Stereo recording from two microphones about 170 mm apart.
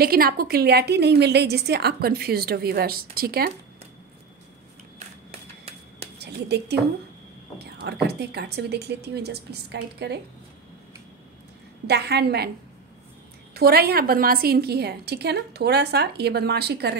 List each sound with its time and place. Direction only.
0.0 s a woman's voice: 60° right (ahead or behind)
6.1 s a sound: 75° right (ahead or behind)
7.5 s a woman's voice: 75° right (ahead or behind)
11.9 s a woman's voice: 75° right (ahead or behind)
13.6 s a woman's voice: 65° right (ahead or behind)